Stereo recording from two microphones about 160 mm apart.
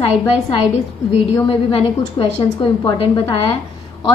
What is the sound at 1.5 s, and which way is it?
A woman's voice, 30° left (ahead or behind).